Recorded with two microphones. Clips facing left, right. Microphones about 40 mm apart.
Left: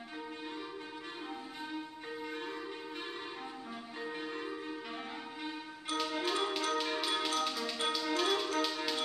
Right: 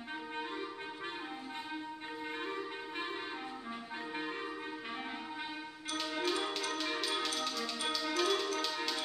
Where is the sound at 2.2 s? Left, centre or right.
Right.